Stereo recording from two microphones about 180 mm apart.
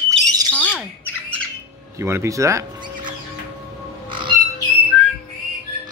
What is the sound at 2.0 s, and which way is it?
Speech, 15° right (ahead or behind).